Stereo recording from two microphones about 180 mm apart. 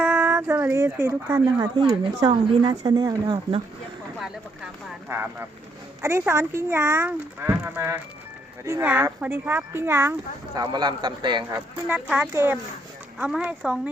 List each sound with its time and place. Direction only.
0.0 s speech: 10° right (ahead or behind); by 3.6 s 25° right (ahead or behind)
4.2 s a child's voice: 10° right (ahead or behind); by 11.6 s 25° right (ahead or behind)
12.1 s a child's voice: 10° right (ahead or behind)